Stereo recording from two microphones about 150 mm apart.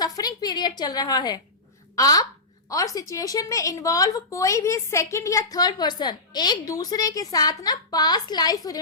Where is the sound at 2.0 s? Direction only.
25° left (ahead or behind).